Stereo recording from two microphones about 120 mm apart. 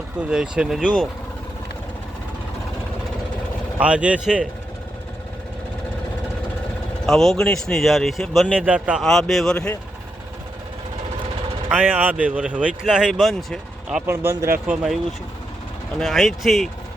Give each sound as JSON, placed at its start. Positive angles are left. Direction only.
{"t": 0.2, "sound": "speech", "side_deg": -10}
{"t": 3.8, "sound": "speech", "side_deg": -10}
{"t": 7.0, "sound": "speech", "side_deg": 5}
{"t": 8.5, "sound": "speech", "side_deg": -10}
{"t": 9.0, "sound": "speech", "side_deg": 5}
{"t": 11.7, "sound": "speech", "side_deg": -10}
{"t": 14.1, "sound": "speech", "side_deg": -20}
{"t": 14.7, "sound": "speech", "side_deg": -10}
{"t": 16.0, "sound": "speech", "side_deg": 0}